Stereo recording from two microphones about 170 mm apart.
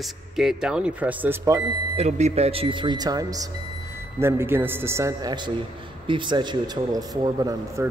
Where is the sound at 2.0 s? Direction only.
40° right (ahead or behind).